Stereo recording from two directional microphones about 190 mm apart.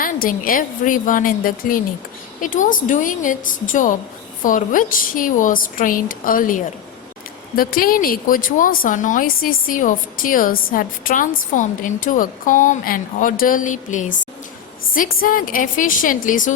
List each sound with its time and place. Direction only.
0.0 s speech: 45° left (ahead or behind)